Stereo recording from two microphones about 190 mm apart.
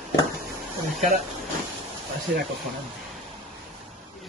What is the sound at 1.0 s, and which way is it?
Speech, 35° right (ahead or behind).